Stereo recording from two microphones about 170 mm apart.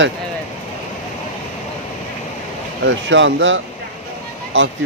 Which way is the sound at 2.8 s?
90° right.